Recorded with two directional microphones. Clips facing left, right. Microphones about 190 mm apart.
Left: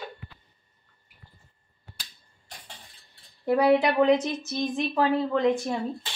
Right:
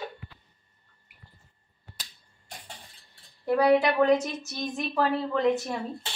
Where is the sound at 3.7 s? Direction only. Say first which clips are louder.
Left 1 dB; 20° left (ahead or behind).